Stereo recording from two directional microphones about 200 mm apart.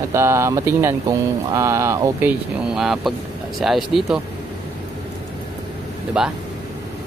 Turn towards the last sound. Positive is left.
turn(degrees=-5)  # may be behind; listen again after turning